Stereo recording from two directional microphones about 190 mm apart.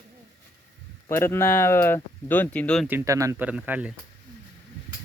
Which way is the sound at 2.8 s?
15° right (ahead or behind).